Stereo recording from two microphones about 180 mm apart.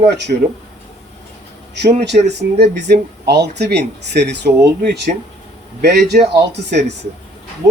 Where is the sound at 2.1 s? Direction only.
50° right (ahead or behind).